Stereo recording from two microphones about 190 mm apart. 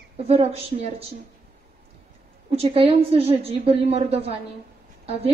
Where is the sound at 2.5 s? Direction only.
30° right (ahead or behind).